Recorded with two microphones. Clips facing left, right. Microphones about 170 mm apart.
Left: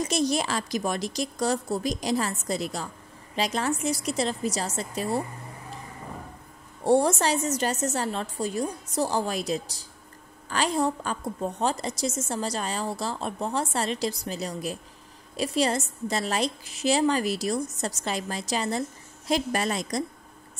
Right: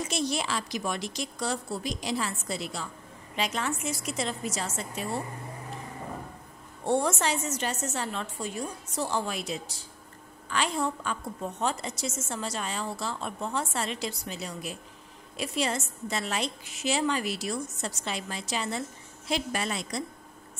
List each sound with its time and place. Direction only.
0.0 s a woman's voice: 40° left (ahead or behind)
6.8 s a woman's voice: 35° left (ahead or behind)